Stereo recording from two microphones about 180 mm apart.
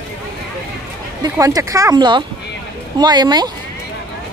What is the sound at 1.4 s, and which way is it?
Speech, 20° right (ahead or behind).